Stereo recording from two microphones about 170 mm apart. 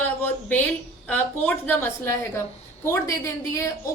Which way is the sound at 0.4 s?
10° left (ahead or behind).